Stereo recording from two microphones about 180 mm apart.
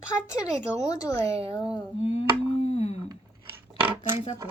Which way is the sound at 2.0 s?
35° left (ahead or behind).